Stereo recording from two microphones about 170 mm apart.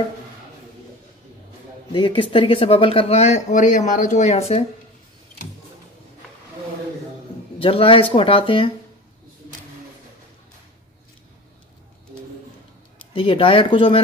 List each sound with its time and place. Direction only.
1.9 s speech: 30° left (ahead or behind)
7.5 s speech: 30° left (ahead or behind)
13.1 s speech: 30° left (ahead or behind)